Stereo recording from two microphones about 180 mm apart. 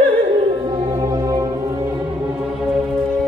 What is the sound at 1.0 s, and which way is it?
Music, 20° right (ahead or behind).